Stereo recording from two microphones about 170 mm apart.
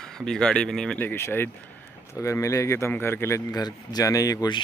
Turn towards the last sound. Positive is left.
turn(degrees=25)  # may be behind; listen again after turning